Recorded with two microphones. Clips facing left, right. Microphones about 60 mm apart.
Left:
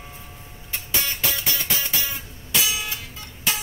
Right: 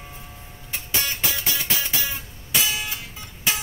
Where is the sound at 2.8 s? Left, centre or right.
Centre.